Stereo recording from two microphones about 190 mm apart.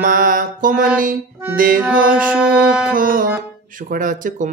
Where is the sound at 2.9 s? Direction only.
45° right (ahead or behind).